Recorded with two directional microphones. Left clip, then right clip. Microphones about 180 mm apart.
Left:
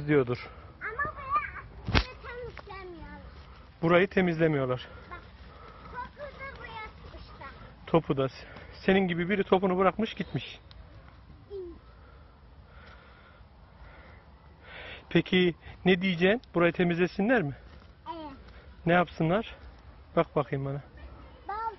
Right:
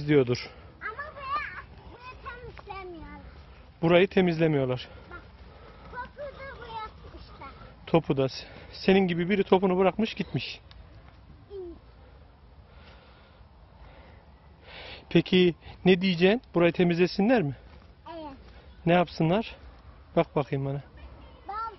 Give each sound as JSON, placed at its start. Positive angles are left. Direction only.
{"t": 0.0, "sound": "a man's voice", "side_deg": -75}
{"t": 0.9, "sound": "a sound", "side_deg": 0}
{"t": 3.8, "sound": "a man's voice", "side_deg": -35}
{"t": 5.9, "sound": "a sound", "side_deg": 0}
{"t": 6.7, "sound": "vehicle", "side_deg": -15}
{"t": 7.5, "sound": "speech", "side_deg": -35}
{"t": 14.7, "sound": "a man's voice", "side_deg": -45}
{"t": 18.0, "sound": "a sound", "side_deg": 0}
{"t": 18.9, "sound": "a man's voice", "side_deg": -40}